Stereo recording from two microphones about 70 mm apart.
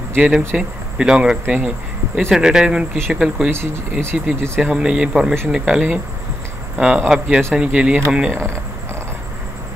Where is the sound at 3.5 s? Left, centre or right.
Right.